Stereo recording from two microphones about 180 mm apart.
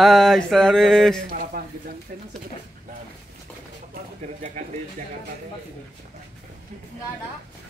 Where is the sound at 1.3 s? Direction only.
55° right (ahead or behind).